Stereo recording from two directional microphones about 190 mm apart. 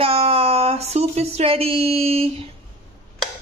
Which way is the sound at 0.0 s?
30° right (ahead or behind).